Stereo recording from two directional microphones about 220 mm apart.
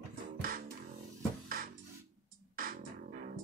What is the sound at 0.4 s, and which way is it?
Music, 40° right (ahead or behind).